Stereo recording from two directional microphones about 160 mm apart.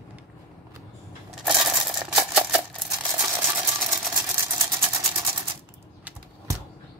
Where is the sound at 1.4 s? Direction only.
5° right (ahead or behind).